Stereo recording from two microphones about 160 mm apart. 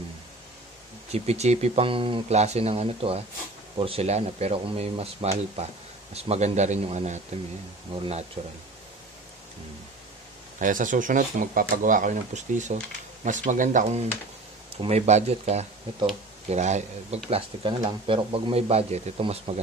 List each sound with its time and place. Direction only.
1.1 s a man's voice: 40° right (ahead or behind)
10.6 s speech: 55° right (ahead or behind)
14.8 s speech: 40° right (ahead or behind)
17.3 s a man's voice: 35° right (ahead or behind)